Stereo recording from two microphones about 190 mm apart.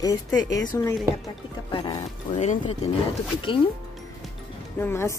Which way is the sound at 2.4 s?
35° left (ahead or behind).